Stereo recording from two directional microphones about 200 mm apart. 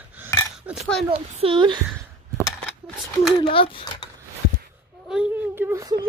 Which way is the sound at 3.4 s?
25° left (ahead or behind).